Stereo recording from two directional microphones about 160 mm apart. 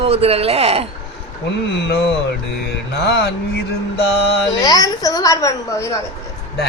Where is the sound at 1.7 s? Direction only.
90° left.